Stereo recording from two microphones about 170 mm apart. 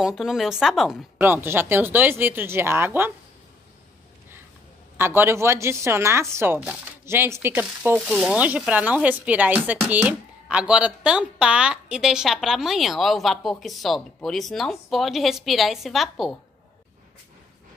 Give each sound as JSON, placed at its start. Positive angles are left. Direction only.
{"t": 0.0, "sound": "speech", "side_deg": 0}
{"t": 4.9, "sound": "speech", "side_deg": -15}